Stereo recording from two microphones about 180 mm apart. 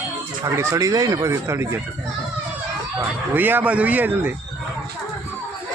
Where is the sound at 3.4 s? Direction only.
10° right (ahead or behind).